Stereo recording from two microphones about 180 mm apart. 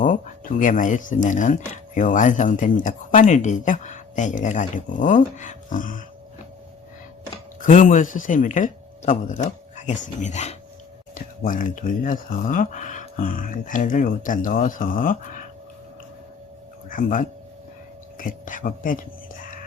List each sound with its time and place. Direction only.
0.0 s speech: 45° left (ahead or behind)
7.6 s speech: 45° left (ahead or behind)
16.9 s speech: 50° left (ahead or behind)